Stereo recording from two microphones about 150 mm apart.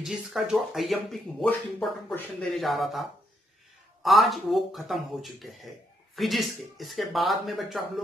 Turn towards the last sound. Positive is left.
turn(degrees=0)  # may be behind; listen again after turning